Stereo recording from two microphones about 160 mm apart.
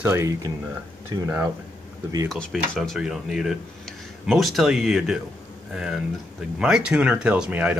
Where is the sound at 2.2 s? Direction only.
5° left (ahead or behind).